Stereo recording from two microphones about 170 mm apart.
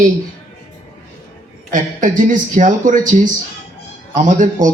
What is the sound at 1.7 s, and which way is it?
A man's voice, 50° right (ahead or behind).